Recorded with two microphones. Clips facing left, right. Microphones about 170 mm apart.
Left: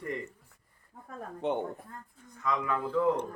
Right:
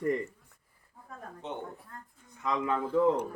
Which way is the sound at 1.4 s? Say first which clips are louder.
Left 9 dB; 60° left (ahead or behind).